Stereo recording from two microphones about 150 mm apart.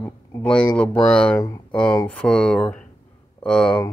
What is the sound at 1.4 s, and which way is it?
Speech, 20° left (ahead or behind).